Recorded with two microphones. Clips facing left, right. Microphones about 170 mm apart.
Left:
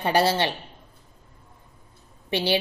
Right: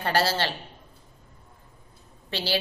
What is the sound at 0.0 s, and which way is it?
Speech, 15° left (ahead or behind).